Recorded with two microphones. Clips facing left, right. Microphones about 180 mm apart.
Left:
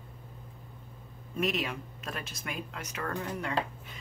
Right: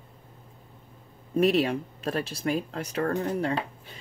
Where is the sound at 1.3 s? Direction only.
35° right (ahead or behind).